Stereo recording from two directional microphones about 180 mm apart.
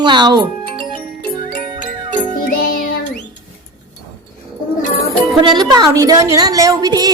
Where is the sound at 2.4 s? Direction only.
55° left (ahead or behind).